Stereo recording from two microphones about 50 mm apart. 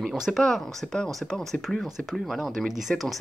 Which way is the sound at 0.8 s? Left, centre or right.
Centre.